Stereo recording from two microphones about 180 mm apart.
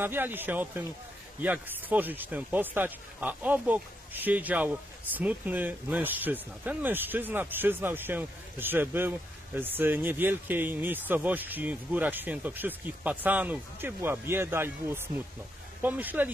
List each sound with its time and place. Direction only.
0.0 s speech: 10° right (ahead or behind)